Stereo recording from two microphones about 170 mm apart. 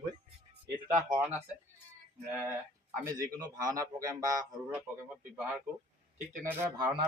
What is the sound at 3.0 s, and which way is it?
A man's voice, 20° right (ahead or behind).